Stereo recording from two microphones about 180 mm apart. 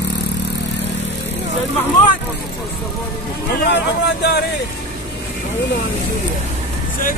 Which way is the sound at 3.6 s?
65° left (ahead or behind).